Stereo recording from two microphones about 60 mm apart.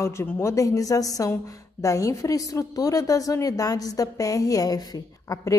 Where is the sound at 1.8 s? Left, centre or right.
Left.